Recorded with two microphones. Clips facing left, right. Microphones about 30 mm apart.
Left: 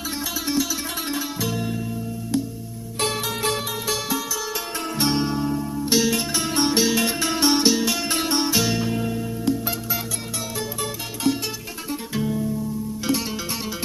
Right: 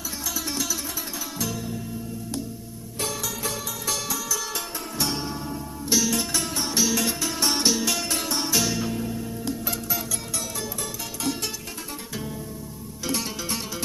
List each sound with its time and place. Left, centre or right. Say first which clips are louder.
3.0 s music: left 5 dB; left
3.8 s music: left 4 dB; left
6.5 s music: left 6 dB; left
7.4 s music: left 4 dB; centre
8.1 s music: left 5 dB; left
8.4 s music: left 1 dB; left
8.9 s music: left 4 dB; left
12.2 s music: left 14 dB; centre